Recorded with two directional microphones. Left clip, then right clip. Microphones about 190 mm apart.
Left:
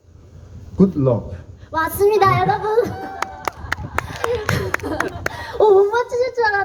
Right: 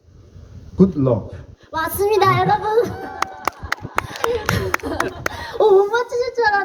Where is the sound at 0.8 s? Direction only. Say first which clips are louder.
Even; 35° right (ahead or behind).